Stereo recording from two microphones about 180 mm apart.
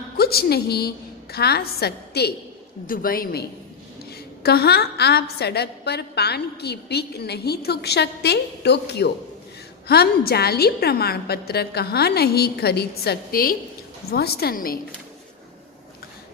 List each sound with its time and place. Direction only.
0.2 s a woman's voice: 60° left (ahead or behind)